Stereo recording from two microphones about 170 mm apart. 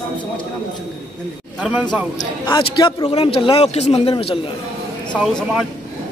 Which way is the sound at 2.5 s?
30° left (ahead or behind).